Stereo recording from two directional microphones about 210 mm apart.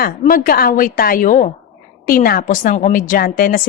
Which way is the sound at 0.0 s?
45° left (ahead or behind).